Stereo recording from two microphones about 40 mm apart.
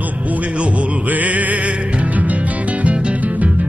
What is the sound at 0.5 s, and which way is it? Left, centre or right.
Music, right.